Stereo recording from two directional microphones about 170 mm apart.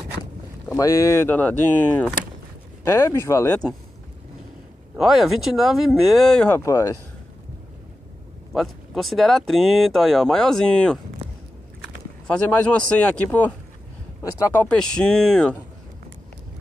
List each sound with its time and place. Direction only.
0.7 s speech: 20° left (ahead or behind)
4.9 s speech: centre (ahead or behind)
6.6 s speech: 20° left (ahead or behind)
8.5 s speech: centre (ahead or behind)
12.3 s speech: 5° left (ahead or behind)